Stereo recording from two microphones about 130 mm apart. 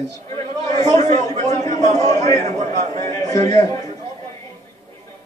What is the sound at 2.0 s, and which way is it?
Speech, 30° left (ahead or behind).